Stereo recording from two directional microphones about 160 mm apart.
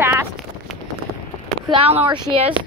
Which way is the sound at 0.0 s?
15° right (ahead or behind).